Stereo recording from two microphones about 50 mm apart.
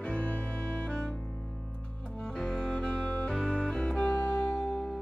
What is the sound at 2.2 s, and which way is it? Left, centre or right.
Music, centre.